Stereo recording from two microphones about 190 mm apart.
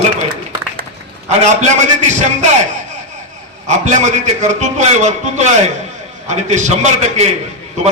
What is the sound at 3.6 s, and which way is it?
A man's voice, 40° right (ahead or behind).